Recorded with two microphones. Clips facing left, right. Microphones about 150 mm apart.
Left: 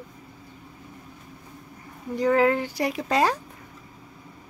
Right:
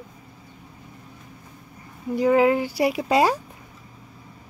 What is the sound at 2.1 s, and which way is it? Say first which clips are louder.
A woman's voice: right 3 dB; 10° right (ahead or behind).